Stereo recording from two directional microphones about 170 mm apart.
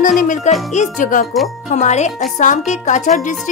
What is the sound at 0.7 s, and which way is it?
Speech, 50° left (ahead or behind).